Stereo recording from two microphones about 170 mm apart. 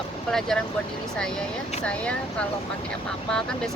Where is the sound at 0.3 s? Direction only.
Centre (ahead or behind).